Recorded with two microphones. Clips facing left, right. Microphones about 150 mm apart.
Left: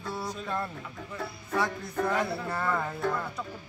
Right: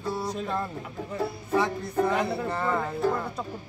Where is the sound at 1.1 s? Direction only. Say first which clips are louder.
Right 5 dB; 25° right (ahead or behind).